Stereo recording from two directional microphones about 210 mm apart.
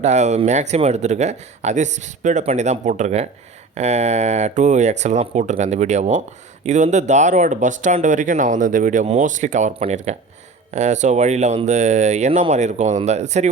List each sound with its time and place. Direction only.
0.0 s speech: 35° right (ahead or behind)